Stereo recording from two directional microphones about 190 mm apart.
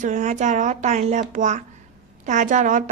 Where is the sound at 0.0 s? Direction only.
40° right (ahead or behind).